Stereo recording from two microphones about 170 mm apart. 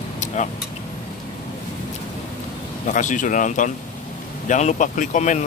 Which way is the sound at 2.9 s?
50° left (ahead or behind).